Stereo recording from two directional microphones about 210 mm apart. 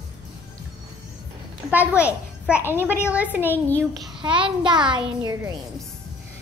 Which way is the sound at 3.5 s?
10° left (ahead or behind).